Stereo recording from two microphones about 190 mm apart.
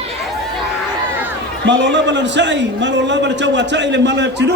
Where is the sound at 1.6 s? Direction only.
70° right (ahead or behind).